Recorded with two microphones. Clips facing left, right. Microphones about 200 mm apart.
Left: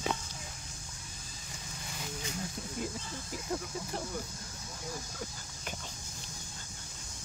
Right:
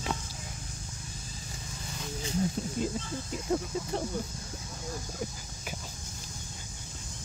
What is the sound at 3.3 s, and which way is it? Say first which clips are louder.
Speech: right 6 dB; 25° right (ahead or behind).